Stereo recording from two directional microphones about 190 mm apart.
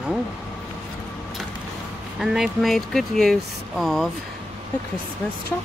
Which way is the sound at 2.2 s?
Centre (ahead or behind).